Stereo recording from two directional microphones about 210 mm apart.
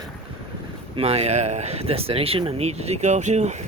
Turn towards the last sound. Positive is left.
turn(degrees=-30)  # may be behind; listen again after turning